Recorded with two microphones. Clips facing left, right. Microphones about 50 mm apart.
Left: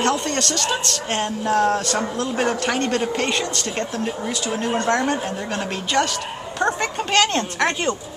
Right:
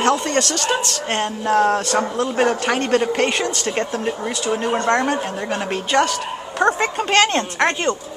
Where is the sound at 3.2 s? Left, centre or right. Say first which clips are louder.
Right 3 dB; centre.